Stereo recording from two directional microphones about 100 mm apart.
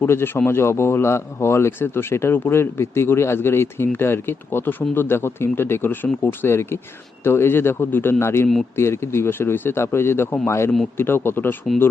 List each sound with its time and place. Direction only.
0.0 s speech: 25° left (ahead or behind)